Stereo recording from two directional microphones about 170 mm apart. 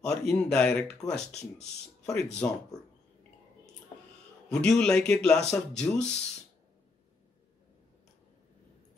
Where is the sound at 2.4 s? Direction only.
10° left (ahead or behind).